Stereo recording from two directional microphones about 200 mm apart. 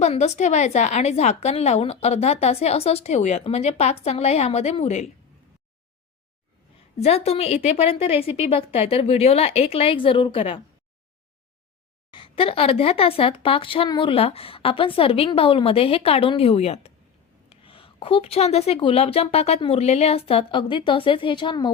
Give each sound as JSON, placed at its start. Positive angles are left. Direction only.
{"t": 0.0, "sound": "a woman's voice", "side_deg": 35}
{"t": 7.0, "sound": "speech", "side_deg": 30}
{"t": 12.1, "sound": "speech", "side_deg": 25}